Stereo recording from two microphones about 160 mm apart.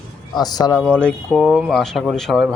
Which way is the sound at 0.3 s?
25° left (ahead or behind).